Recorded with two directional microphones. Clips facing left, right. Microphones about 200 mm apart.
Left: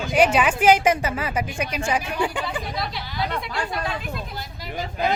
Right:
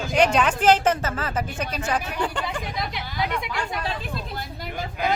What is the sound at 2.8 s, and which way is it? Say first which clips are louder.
Speech: even; 15° right (ahead or behind).